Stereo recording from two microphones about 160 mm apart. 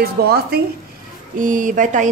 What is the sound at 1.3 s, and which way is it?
Speech, 55° right (ahead or behind).